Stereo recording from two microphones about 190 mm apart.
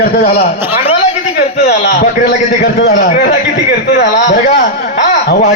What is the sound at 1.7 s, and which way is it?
A man's voice, 60° left (ahead or behind).